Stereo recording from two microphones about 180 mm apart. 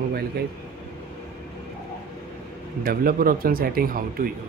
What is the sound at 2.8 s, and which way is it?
Speech, 55° right (ahead or behind).